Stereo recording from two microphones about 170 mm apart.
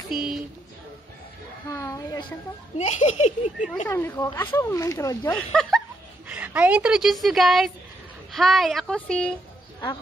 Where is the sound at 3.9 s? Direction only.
15° left (ahead or behind).